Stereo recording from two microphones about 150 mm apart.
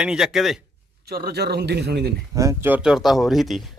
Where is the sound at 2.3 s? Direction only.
20° right (ahead or behind); by 3.6 s centre (ahead or behind).